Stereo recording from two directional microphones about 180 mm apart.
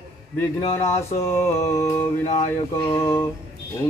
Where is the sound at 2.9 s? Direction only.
15° left (ahead or behind).